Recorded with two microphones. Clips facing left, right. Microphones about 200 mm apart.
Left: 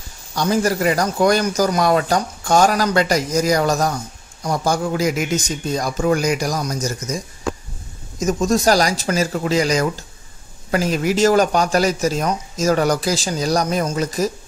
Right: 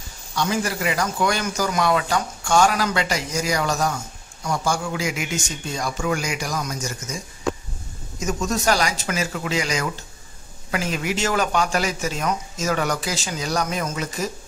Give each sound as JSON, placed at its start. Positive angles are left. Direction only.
{"t": 0.3, "sound": "a man's voice", "side_deg": 40}
{"t": 8.2, "sound": "a man's voice", "side_deg": 30}